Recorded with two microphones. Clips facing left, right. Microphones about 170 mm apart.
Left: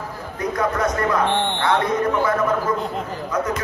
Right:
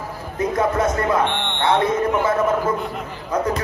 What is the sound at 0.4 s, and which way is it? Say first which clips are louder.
Speech: right 2 dB; 25° right (ahead or behind).